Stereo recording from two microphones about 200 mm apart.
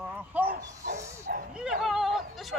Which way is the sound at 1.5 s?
5° right (ahead or behind).